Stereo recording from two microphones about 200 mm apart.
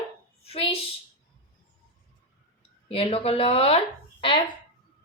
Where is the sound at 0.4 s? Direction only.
30° left (ahead or behind).